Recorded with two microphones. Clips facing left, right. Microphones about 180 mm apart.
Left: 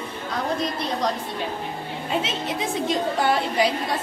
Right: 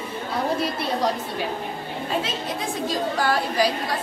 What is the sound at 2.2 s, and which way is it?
A woman's voice, 20° left (ahead or behind).